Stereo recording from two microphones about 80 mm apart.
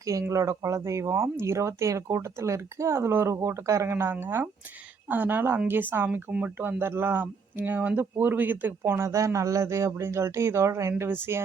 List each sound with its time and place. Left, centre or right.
0.0 s speech: right